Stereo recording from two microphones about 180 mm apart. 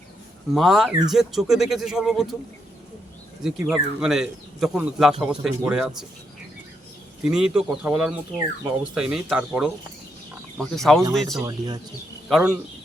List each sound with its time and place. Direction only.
0.5 s speech: centre (ahead or behind)
3.4 s speech: 5° right (ahead or behind)
7.3 s speech: 5° right (ahead or behind)
11.4 s speech: 20° right (ahead or behind)
12.3 s speech: 5° right (ahead or behind)